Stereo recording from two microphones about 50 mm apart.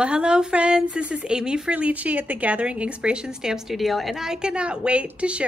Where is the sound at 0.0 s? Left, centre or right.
Centre.